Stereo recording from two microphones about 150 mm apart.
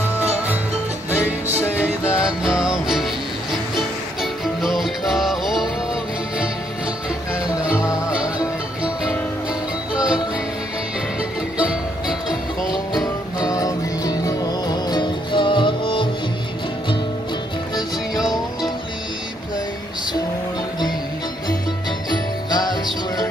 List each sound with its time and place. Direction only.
2.1 s music: 5° right (ahead or behind)
9.9 s music: 5° right (ahead or behind)
11.5 s music: 5° right (ahead or behind)
12.9 s music: 25° left (ahead or behind)
22.5 s music: 25° left (ahead or behind)